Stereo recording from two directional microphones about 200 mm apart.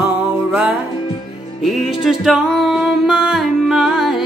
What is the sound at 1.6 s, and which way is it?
Music, centre (ahead or behind).